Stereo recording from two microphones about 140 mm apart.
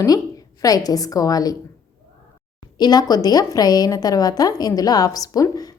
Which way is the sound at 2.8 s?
30° left (ahead or behind).